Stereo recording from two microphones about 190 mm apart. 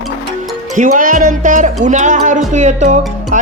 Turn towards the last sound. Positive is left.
turn(degrees=-45)  # may be behind; listen again after turning